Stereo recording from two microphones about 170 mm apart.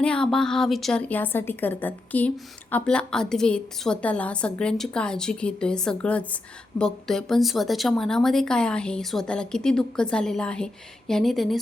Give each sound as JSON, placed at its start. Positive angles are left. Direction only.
{"t": 0.0, "sound": "a woman's voice", "side_deg": 5}